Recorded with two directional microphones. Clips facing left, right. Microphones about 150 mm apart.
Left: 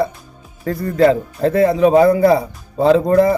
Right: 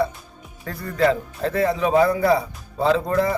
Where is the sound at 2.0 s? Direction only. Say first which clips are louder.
Left 4 dB; 35° left (ahead or behind).